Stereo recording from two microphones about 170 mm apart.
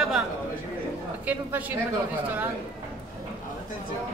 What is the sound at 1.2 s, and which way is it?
Speech, 10° right (ahead or behind).